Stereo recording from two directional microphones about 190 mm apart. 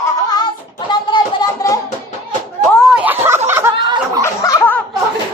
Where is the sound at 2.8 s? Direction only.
5° right (ahead or behind).